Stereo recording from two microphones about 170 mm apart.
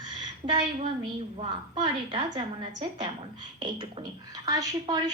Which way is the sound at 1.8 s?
25° right (ahead or behind).